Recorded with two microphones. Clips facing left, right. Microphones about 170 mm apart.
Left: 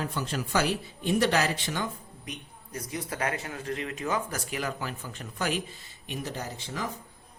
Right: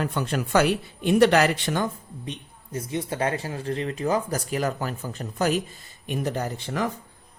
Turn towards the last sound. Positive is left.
turn(degrees=-60)  # may be behind; listen again after turning